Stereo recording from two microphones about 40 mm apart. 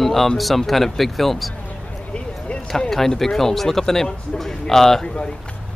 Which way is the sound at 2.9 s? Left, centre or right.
Centre.